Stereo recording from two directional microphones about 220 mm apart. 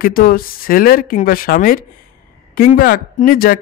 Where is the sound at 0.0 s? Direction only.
40° left (ahead or behind).